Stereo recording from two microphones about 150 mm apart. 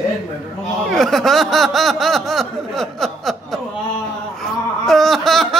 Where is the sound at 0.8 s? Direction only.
5° left (ahead or behind).